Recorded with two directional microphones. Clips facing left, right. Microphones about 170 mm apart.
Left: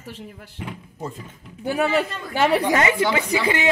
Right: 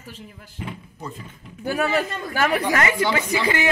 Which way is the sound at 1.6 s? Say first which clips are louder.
Left 1 dB; 20° left (ahead or behind).